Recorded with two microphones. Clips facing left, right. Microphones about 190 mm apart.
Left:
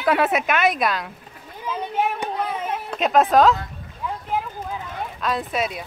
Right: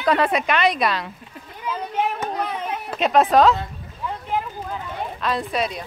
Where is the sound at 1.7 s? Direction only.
Centre (ahead or behind).